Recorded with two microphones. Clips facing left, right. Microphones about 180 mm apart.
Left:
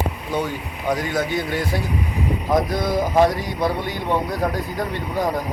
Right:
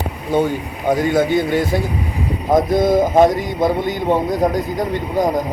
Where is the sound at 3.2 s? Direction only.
20° right (ahead or behind).